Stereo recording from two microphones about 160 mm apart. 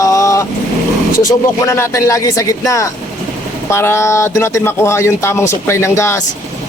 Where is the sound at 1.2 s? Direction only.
15° left (ahead or behind).